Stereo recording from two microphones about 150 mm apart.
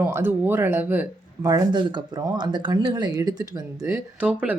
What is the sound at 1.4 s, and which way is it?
Speech, 25° right (ahead or behind).